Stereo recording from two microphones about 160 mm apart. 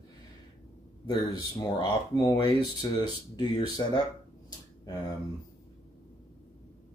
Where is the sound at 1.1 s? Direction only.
30° left (ahead or behind).